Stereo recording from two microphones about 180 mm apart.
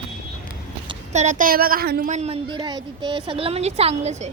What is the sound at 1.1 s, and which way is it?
Speech, 40° right (ahead or behind).